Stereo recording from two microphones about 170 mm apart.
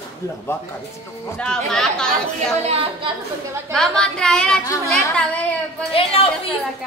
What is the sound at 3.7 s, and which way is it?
Speech, 5° left (ahead or behind).